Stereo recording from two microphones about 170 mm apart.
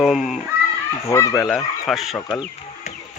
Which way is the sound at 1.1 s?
15° left (ahead or behind).